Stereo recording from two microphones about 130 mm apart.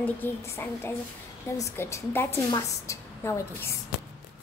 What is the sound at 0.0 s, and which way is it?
A woman's voice, 15° left (ahead or behind).